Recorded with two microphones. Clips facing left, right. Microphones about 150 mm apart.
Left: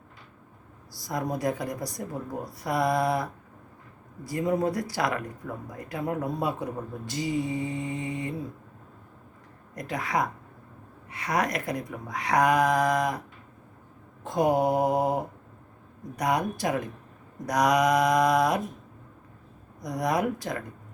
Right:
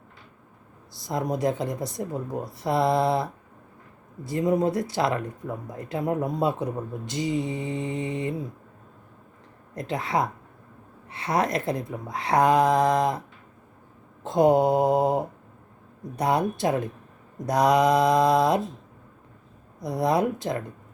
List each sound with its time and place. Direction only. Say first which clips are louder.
0.9 s speech: right 3 dB; 25° right (ahead or behind)
9.7 s speech: right 2 dB; 25° right (ahead or behind)
14.3 s speech: right 4 dB; 25° right (ahead or behind)
19.8 s speech: right 3 dB; 25° right (ahead or behind)